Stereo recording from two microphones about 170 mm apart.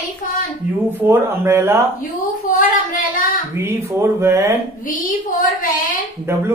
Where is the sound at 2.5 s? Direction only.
50° left (ahead or behind).